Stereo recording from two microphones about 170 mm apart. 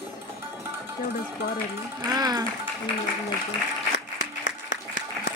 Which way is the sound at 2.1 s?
20° right (ahead or behind).